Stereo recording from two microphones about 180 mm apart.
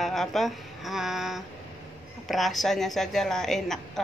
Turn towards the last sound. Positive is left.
turn(degrees=0)  # may be behind; listen again after turning